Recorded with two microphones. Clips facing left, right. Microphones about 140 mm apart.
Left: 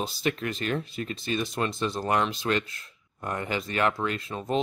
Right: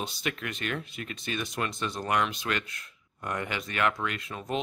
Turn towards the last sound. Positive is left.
turn(degrees=30)  # may be behind; listen again after turning